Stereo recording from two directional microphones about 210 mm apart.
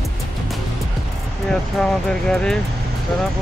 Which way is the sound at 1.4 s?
Centre (ahead or behind).